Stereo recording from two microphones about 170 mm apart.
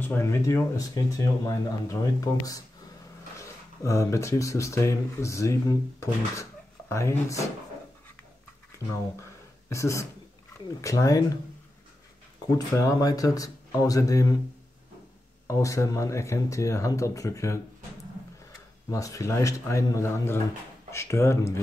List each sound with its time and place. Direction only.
0.0 s speech: 15° left (ahead or behind)
8.7 s a sound: 15° left (ahead or behind)
10.8 s speech: 20° left (ahead or behind)
12.5 s speech: 20° left (ahead or behind)
15.4 s speech: 20° left (ahead or behind)
18.9 s speech: 20° left (ahead or behind)